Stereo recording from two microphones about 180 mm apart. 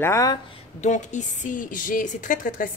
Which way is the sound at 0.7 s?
40° left (ahead or behind).